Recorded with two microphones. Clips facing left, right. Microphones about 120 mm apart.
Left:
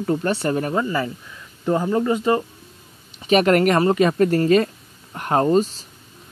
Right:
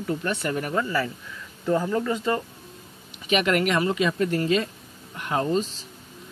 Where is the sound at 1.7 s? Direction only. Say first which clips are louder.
Left 4 dB; 30° left (ahead or behind).